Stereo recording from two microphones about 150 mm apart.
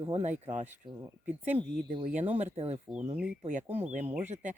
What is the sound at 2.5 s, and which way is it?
Speech, 40° right (ahead or behind).